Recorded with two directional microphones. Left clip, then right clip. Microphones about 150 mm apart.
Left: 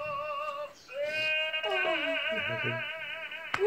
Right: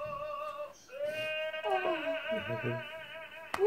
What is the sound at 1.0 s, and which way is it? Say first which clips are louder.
Music: left 5 dB; 15° left (ahead or behind).